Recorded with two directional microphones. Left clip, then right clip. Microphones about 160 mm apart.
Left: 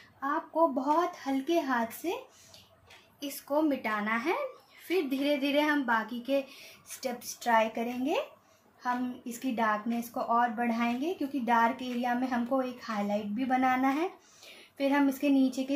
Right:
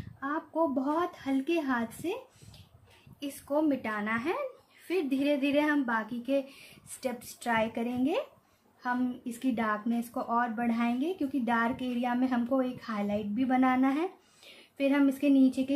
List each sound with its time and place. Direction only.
0.3 s a woman's voice: 40° right (ahead or behind)
3.2 s a woman's voice: 25° right (ahead or behind)
7.0 s a woman's voice: 40° right (ahead or behind)